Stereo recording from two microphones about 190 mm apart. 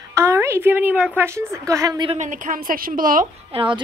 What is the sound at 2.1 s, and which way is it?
A woman's voice, 40° right (ahead or behind).